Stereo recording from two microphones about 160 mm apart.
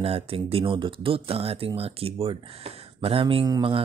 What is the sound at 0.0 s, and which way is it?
Speech, 40° right (ahead or behind).